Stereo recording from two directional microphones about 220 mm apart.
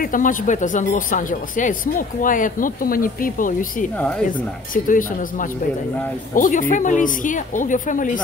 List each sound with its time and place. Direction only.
0.0 s speech: 40° left (ahead or behind)
4.8 s speech: 35° left (ahead or behind)